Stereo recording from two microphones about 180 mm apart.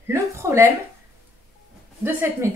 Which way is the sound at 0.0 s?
15° right (ahead or behind).